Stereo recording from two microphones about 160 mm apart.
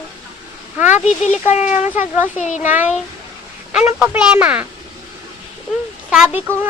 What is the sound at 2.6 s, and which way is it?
Speech, 10° right (ahead or behind).